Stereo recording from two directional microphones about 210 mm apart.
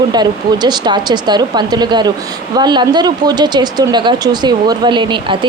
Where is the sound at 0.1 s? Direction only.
20° right (ahead or behind).